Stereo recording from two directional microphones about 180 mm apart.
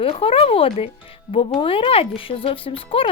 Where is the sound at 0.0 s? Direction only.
30° left (ahead or behind).